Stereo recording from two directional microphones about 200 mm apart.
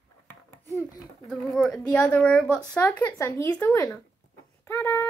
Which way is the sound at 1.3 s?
5° left (ahead or behind).